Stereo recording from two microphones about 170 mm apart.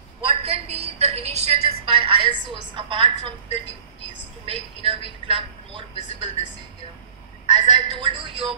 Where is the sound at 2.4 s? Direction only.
30° right (ahead or behind).